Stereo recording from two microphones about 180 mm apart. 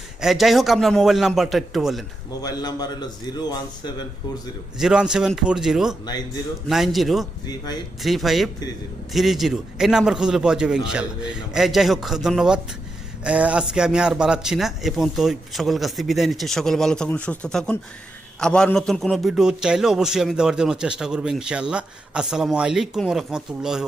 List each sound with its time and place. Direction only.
0.2 s a man's voice: centre (ahead or behind)
2.4 s a man's voice: 20° left (ahead or behind)
4.8 s a man's voice: 5° right (ahead or behind)
7.4 s a man's voice: 20° left (ahead or behind)
8.0 s a man's voice: centre (ahead or behind)